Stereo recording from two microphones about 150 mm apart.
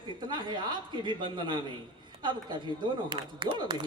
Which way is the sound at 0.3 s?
30° right (ahead or behind).